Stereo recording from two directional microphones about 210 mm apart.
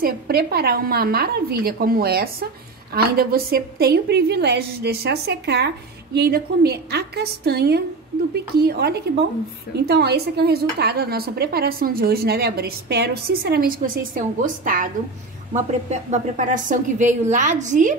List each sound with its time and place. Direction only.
0.0 s a woman's voice: 45° right (ahead or behind)